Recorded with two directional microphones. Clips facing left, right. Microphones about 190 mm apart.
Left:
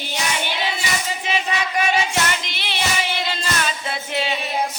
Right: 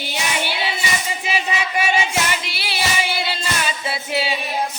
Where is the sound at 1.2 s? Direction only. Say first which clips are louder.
Even; 5° right (ahead or behind).